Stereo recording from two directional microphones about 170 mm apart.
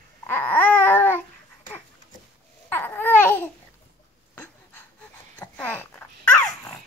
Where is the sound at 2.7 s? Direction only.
10° left (ahead or behind).